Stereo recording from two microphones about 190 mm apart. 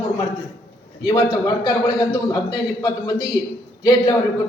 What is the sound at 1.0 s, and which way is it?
A man's voice, 20° left (ahead or behind).